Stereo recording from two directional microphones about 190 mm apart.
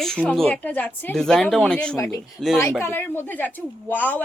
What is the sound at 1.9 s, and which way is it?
Speech, 15° left (ahead or behind).